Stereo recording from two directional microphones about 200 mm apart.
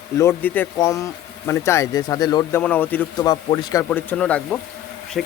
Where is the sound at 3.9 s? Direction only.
5° left (ahead or behind).